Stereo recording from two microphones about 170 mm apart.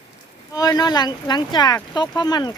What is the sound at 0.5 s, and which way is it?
Speech, 20° left (ahead or behind).